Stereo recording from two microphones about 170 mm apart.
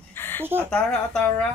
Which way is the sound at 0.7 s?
5° left (ahead or behind).